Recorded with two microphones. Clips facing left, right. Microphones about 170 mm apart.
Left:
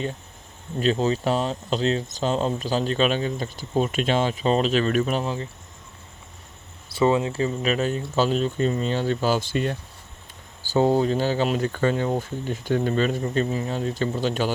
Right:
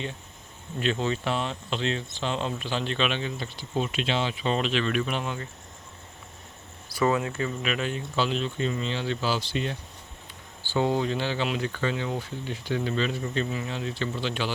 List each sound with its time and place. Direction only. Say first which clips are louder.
0.8 s speech: left 5 dB; 35° left (ahead or behind)
6.8 s speech: left 4 dB; 25° left (ahead or behind); by 14.5 s 45° left (ahead or behind)